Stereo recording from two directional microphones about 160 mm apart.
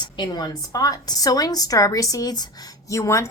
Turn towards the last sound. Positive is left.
turn(degrees=20)  # may be behind; listen again after turning